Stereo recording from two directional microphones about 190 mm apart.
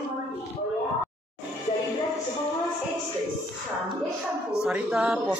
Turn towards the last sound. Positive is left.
turn(degrees=-5)  # may be behind; listen again after turning